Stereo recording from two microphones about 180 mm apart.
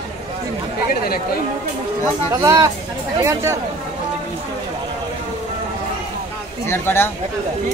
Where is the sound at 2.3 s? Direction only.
20° right (ahead or behind).